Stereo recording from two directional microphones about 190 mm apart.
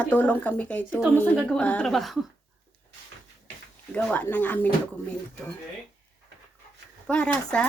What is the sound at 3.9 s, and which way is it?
Speech, 5° left (ahead or behind).